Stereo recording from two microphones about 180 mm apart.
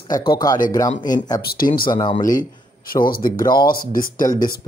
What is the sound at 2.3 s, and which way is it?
Speech, 50° left (ahead or behind).